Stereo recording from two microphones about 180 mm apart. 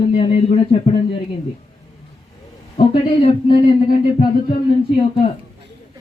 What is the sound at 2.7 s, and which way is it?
Speech, 35° left (ahead or behind).